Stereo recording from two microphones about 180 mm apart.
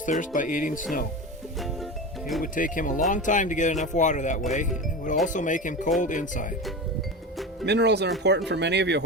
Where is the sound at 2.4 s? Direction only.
50° left (ahead or behind).